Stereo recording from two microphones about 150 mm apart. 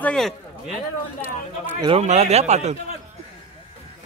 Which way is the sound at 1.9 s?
50° right (ahead or behind).